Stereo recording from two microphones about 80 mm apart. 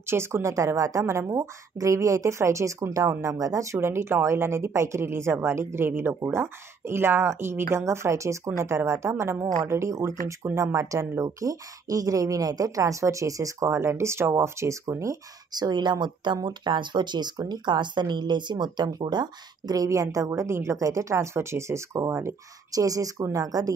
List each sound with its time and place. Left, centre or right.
0.0 s speech: right
15.5 s a woman's voice: right